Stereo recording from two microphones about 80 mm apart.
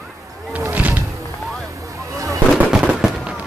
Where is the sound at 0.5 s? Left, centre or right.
Centre.